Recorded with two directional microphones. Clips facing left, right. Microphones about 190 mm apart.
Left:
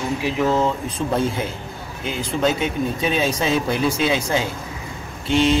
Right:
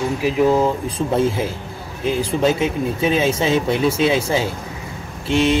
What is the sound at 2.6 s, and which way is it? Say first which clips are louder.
Speech: right 3 dB; centre (ahead or behind).